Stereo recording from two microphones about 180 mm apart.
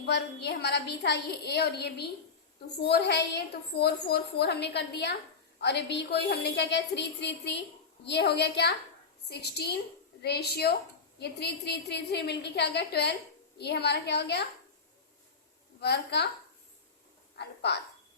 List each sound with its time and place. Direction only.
0.1 s a woman's voice: 70° left (ahead or behind)
15.8 s a woman's voice: 65° left (ahead or behind)
17.3 s a woman's voice: 70° left (ahead or behind)